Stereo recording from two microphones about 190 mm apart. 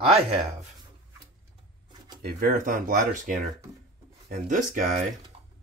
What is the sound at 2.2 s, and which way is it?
Speech, 50° right (ahead or behind).